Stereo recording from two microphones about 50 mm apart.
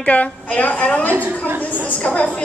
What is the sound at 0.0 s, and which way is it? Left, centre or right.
A woman's voice, left.